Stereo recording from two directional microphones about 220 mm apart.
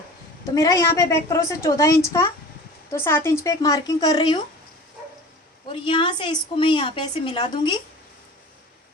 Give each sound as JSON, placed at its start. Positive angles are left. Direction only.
{"t": 0.5, "sound": "a woman's voice", "side_deg": 15}
{"t": 5.6, "sound": "a woman's voice", "side_deg": 20}